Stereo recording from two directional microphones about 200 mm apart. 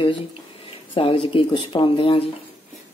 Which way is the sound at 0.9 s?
25° left (ahead or behind).